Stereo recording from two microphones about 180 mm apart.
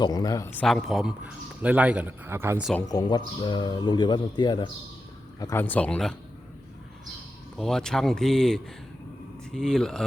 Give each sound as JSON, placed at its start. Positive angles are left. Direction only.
{"t": 0.0, "sound": "speech", "side_deg": 20}
{"t": 0.6, "sound": "speech", "side_deg": 0}
{"t": 2.8, "sound": "speech", "side_deg": 20}
{"t": 7.5, "sound": "speech", "side_deg": 0}